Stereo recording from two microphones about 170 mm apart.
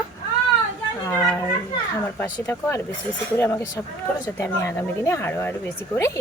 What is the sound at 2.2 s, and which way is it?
Speech, 15° left (ahead or behind).